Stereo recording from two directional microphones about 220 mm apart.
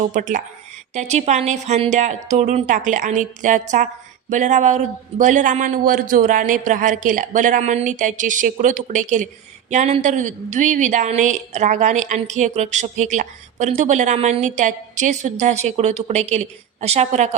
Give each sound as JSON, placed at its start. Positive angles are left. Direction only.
{"t": 0.0, "sound": "speech", "side_deg": -35}